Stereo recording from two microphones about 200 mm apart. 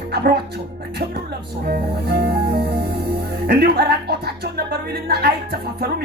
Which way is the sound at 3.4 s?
50° right (ahead or behind).